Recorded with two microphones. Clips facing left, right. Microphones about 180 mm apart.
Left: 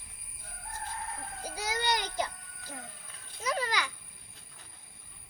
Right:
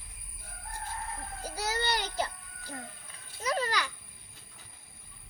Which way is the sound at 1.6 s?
15° left (ahead or behind).